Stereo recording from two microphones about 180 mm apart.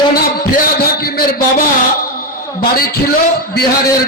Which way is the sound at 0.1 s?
55° left (ahead or behind).